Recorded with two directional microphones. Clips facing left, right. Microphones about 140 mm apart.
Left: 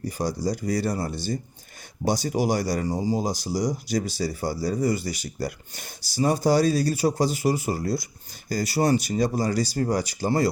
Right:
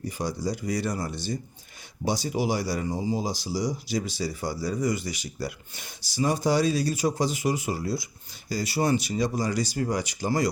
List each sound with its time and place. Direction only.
0.2 s speech: 40° left (ahead or behind)
2.8 s speech: 35° left (ahead or behind)
3.2 s speech: 45° left (ahead or behind)